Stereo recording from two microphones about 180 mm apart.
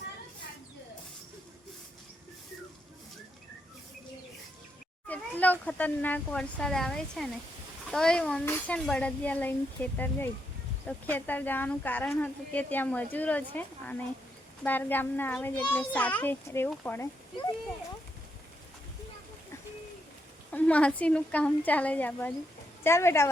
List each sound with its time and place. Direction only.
5.0 s speech: 10° left (ahead or behind)
20.5 s speech: 10° left (ahead or behind)